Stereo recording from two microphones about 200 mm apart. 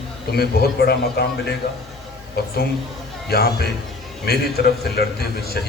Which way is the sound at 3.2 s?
50° left (ahead or behind).